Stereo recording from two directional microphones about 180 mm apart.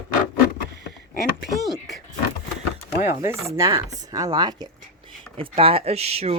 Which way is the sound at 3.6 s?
15° right (ahead or behind).